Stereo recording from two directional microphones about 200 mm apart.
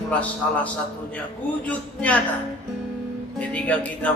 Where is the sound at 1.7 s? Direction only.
5° left (ahead or behind).